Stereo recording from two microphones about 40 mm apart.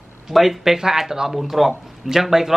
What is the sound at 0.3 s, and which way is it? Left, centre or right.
Speech, centre.